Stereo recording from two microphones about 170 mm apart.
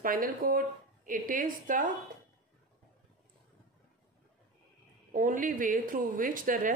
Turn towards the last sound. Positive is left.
turn(degrees=-55)  # may be behind; listen again after turning